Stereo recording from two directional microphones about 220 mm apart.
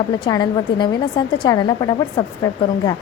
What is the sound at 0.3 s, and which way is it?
A woman's voice, 20° left (ahead or behind).